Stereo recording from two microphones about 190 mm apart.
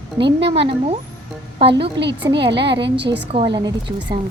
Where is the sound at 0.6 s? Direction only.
30° right (ahead or behind).